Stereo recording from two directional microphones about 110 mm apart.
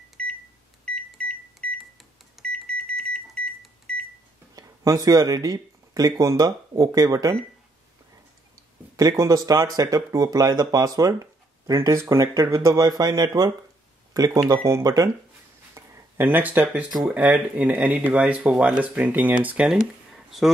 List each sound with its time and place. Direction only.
0.2 s microwave oven: 5° left (ahead or behind)
1.6 s cash register: 5° left (ahead or behind)
2.3 s microwave oven: 5° left (ahead or behind)
4.6 s speech: 30° right (ahead or behind)
8.9 s speech: 30° right (ahead or behind)
15.7 s a sound: 20° right (ahead or behind)
17.0 s speech: 15° right (ahead or behind)